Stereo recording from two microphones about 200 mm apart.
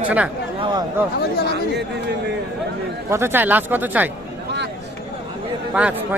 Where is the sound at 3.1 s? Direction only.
10° right (ahead or behind).